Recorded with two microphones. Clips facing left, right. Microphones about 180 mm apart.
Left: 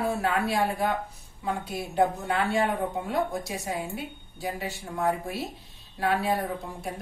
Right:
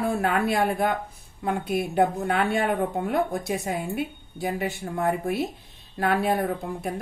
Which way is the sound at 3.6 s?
55° right (ahead or behind).